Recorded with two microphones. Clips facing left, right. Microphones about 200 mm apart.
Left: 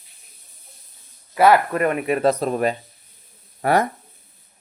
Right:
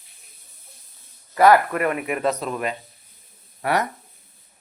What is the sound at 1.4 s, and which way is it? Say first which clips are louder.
Speech: even; 25° left (ahead or behind).